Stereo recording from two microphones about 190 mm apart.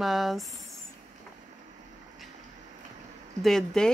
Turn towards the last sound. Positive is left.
turn(degrees=5)  # may be behind; listen again after turning